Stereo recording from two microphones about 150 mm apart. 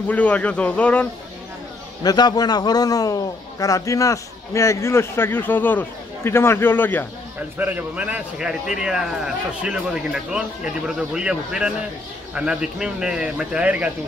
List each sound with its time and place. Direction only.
0.1 s a man's voice: 10° left (ahead or behind)
2.0 s a man's voice: 25° left (ahead or behind)
7.5 s a man's voice: 10° right (ahead or behind)